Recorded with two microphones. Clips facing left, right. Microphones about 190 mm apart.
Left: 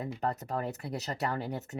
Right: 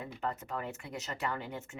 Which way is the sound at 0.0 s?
40° left (ahead or behind).